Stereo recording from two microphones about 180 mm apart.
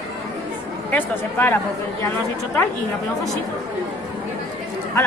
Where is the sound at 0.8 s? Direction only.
10° left (ahead or behind).